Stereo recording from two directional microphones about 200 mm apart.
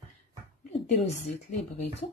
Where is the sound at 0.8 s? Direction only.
35° left (ahead or behind).